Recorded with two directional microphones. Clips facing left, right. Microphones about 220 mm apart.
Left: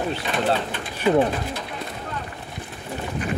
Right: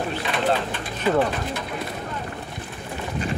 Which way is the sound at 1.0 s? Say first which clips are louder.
Left 2 dB; 15° left (ahead or behind).